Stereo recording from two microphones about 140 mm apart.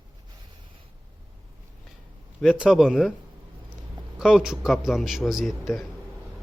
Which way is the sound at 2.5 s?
5° right (ahead or behind).